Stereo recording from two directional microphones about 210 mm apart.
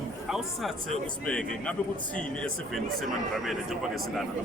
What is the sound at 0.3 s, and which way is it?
Speech, centre (ahead or behind).